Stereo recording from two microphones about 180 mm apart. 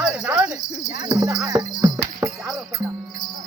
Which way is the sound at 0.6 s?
15° left (ahead or behind).